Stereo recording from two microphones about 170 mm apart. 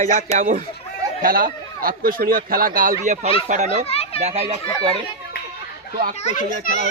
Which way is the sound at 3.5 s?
45° right (ahead or behind).